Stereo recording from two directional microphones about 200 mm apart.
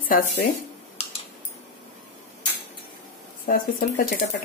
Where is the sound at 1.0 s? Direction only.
35° left (ahead or behind).